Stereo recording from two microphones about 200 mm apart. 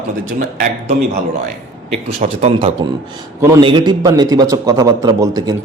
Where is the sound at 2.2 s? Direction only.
30° right (ahead or behind).